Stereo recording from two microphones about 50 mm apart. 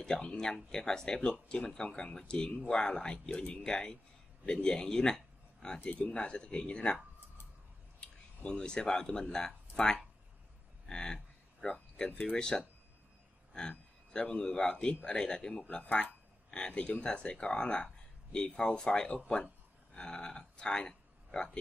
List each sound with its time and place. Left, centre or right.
0.0 s speech: centre
3.3 s speech: left
3.6 s speech: centre
5.9 s speech: left
8.0 s speech: centre
11.6 s a sound: centre
12.4 s speech: centre
15.6 s speech: left